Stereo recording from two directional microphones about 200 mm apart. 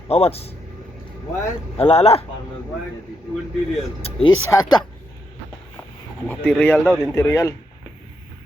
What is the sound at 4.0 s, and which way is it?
Speech, 25° left (ahead or behind).